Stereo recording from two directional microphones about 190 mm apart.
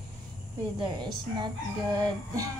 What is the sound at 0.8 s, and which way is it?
Speech, 25° right (ahead or behind).